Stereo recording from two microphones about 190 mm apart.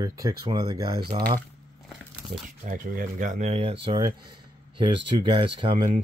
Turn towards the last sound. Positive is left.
turn(degrees=-25)  # may be behind; listen again after turning